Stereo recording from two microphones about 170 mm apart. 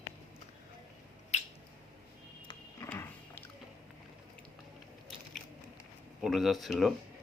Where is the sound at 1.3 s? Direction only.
40° left (ahead or behind).